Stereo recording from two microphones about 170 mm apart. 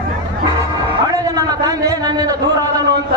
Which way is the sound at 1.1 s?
20° right (ahead or behind).